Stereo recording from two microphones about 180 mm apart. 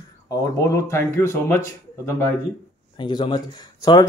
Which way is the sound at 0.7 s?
15° left (ahead or behind).